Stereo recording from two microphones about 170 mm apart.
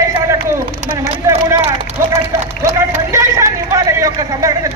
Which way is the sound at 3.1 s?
15° right (ahead or behind).